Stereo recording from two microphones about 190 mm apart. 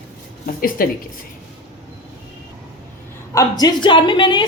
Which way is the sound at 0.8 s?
50° left (ahead or behind).